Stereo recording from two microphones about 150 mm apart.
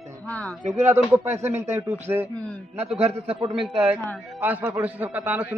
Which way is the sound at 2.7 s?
45° right (ahead or behind).